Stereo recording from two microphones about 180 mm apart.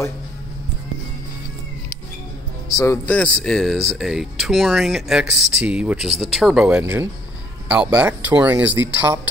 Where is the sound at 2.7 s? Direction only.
15° left (ahead or behind).